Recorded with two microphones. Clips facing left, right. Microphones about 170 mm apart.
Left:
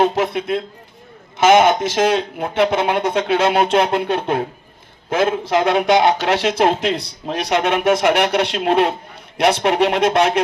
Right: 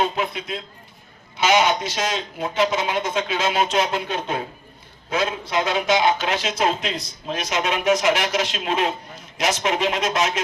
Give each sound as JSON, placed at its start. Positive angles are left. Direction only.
{"t": 0.0, "sound": "speech", "side_deg": 65}